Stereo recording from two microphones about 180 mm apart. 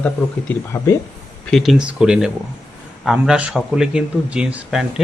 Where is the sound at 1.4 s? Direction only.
Centre (ahead or behind).